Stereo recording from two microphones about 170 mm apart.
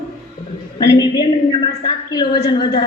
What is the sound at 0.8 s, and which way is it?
A woman's voice, 25° left (ahead or behind).